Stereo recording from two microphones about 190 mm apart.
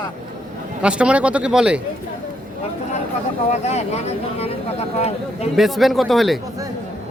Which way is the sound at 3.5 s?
35° left (ahead or behind).